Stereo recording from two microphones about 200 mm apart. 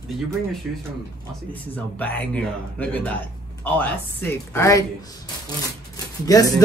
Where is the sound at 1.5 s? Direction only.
10° left (ahead or behind).